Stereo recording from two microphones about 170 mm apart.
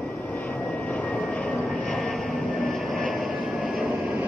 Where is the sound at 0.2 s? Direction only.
10° left (ahead or behind).